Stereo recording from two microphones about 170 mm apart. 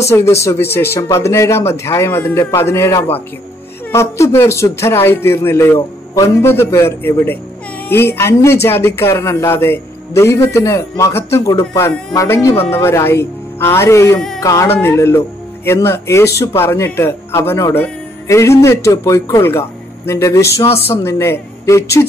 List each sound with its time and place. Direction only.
0.0 s a man's voice: 15° left (ahead or behind)